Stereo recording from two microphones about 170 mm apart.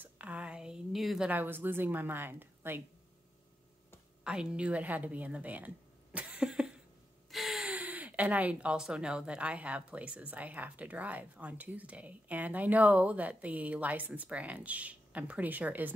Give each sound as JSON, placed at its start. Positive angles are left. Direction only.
{"t": 0.0, "sound": "a woman's voice", "side_deg": -10}
{"t": 4.2, "sound": "speech", "side_deg": -5}
{"t": 6.1, "sound": "cough", "side_deg": -10}
{"t": 7.2, "sound": "speech", "side_deg": 0}